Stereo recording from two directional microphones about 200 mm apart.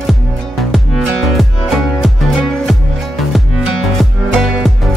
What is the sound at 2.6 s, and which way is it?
Music, centre (ahead or behind).